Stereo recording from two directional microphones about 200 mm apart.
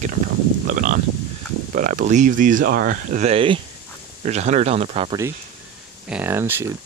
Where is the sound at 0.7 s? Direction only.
40° right (ahead or behind).